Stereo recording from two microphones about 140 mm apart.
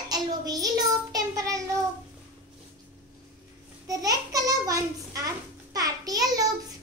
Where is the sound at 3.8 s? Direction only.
25° right (ahead or behind).